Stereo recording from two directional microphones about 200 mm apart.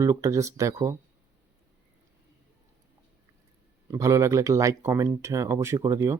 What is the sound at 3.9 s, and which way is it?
Speech, 15° right (ahead or behind).